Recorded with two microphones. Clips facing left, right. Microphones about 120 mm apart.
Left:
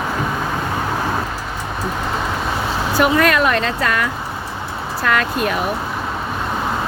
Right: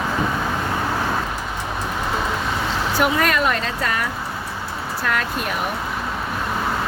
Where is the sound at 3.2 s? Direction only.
90° left.